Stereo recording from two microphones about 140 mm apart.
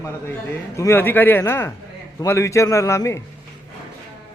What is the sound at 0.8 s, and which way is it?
A man's voice, 15° left (ahead or behind).